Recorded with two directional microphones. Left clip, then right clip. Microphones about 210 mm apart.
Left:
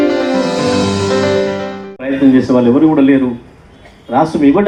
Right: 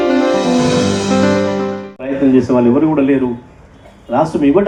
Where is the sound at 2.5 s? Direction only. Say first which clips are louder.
Left 2 dB; 40° left (ahead or behind).